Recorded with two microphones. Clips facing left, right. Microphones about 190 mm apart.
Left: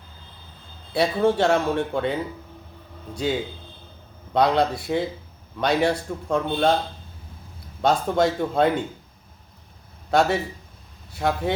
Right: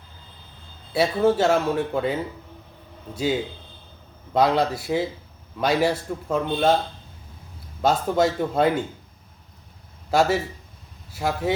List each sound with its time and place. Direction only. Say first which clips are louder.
0.9 s speech: right 1 dB; 5° right (ahead or behind)
4.4 s speech: even; 5° right (ahead or behind)
7.8 s speech: even; 5° right (ahead or behind)
10.1 s speech: even; 5° right (ahead or behind)